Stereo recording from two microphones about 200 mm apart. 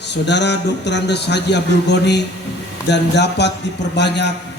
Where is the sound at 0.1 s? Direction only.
60° left (ahead or behind).